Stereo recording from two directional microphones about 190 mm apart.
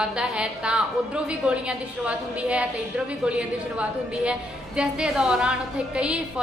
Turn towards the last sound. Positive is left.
turn(degrees=-5)  # may be behind; listen again after turning